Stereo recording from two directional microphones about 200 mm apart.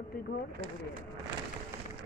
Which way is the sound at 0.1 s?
50° left (ahead or behind).